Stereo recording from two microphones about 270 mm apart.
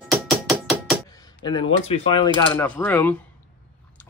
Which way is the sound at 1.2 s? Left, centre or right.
Centre.